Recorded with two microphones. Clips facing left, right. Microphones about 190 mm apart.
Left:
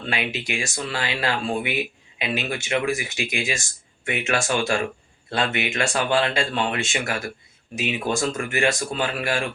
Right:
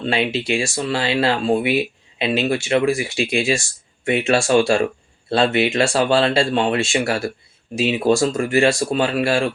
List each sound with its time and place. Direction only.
0.0 s speech: 30° right (ahead or behind)